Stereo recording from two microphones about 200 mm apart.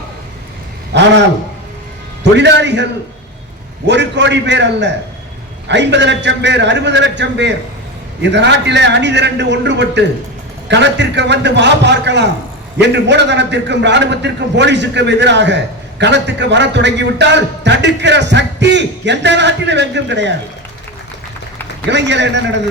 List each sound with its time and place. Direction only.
0.9 s a man's voice: 60° right (ahead or behind)
2.4 s a man's voice: 60° right (ahead or behind)
3.8 s a man's voice: 60° right (ahead or behind)
21.8 s a man's voice: 60° right (ahead or behind)